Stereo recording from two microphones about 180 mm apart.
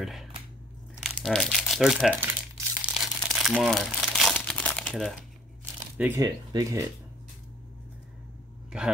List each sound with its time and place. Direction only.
0.0 s speech: centre (ahead or behind)
2.8 s crumpling: 5° right (ahead or behind)
5.9 s speech: 15° right (ahead or behind)
8.7 s a man's voice: 5° right (ahead or behind)